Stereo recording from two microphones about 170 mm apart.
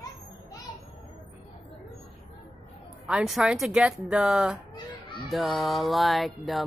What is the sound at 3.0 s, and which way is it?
Music, 5° right (ahead or behind).